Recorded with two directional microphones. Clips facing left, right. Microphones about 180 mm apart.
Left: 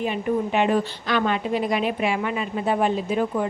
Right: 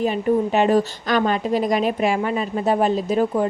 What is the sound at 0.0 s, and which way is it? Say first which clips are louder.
Speech: right 4 dB; 40° right (ahead or behind).